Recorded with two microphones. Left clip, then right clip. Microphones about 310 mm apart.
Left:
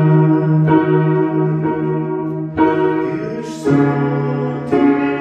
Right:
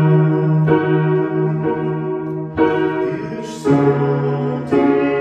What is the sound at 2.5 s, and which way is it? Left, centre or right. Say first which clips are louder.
Music: left 2 dB; centre.